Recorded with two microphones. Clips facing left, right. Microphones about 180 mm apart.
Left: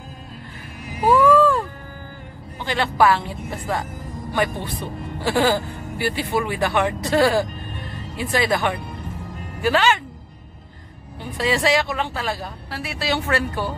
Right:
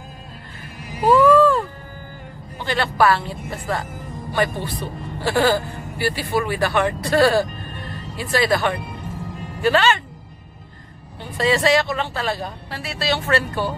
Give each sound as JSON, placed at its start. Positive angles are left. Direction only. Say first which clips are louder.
{"t": 1.0, "sound": "a sound", "louder": "right 2 dB", "side_deg": 10}
{"t": 2.6, "sound": "speech", "louder": "even", "side_deg": 15}
{"t": 5.2, "sound": "speech", "louder": "right 1 dB", "side_deg": 15}
{"t": 11.3, "sound": "speech", "louder": "right 2 dB", "side_deg": 10}